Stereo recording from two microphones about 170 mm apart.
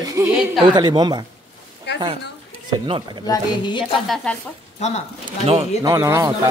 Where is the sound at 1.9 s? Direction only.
80° left.